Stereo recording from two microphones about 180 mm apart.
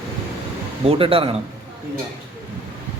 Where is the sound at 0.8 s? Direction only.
30° right (ahead or behind).